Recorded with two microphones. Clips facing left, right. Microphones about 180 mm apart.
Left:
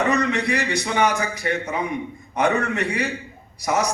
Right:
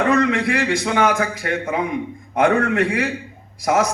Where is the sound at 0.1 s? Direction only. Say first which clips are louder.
Right 4 dB; 50° right (ahead or behind).